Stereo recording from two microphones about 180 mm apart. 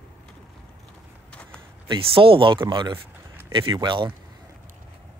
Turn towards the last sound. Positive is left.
turn(degrees=-25)  # may be behind; listen again after turning